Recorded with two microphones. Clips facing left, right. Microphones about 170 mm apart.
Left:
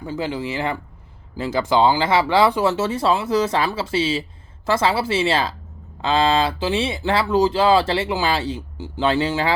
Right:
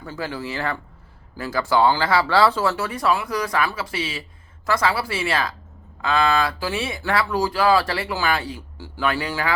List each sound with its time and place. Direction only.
0.0 s speech: 15° left (ahead or behind)